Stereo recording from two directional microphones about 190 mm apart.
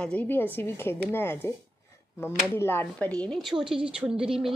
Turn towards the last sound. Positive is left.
turn(degrees=-5)  # may be behind; listen again after turning